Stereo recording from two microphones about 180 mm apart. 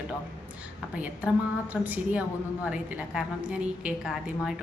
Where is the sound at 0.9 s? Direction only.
10° right (ahead or behind).